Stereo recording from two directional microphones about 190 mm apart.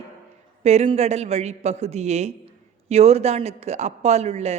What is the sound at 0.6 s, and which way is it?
Speech, 35° right (ahead or behind).